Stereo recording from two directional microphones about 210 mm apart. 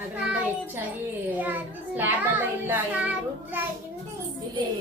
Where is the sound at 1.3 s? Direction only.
10° right (ahead or behind).